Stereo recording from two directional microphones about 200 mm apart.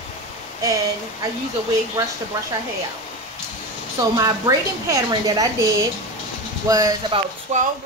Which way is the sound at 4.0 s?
15° right (ahead or behind).